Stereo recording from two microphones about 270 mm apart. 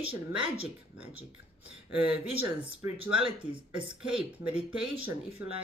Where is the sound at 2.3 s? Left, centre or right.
Centre.